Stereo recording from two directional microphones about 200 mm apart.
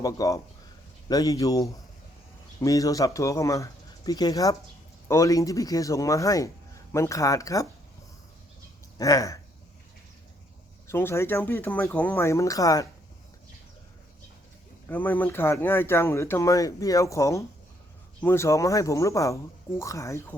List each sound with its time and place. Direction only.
0.0 s speech: 15° left (ahead or behind)
9.0 s speech: 15° left (ahead or behind)
10.8 s speech: 15° left (ahead or behind)
14.8 s speech: 10° left (ahead or behind)